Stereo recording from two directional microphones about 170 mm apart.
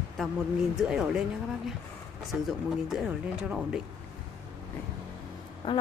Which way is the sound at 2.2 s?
Centre (ahead or behind).